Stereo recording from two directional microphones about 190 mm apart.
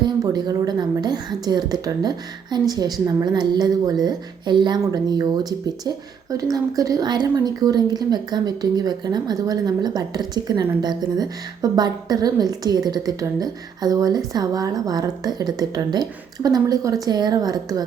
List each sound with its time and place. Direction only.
0.0 s speech: 20° right (ahead or behind)